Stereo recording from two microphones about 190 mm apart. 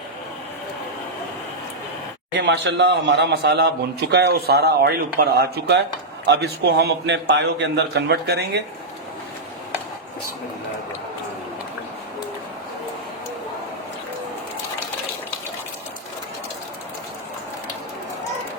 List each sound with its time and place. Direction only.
2.3 s a man's voice: 65° right (ahead or behind)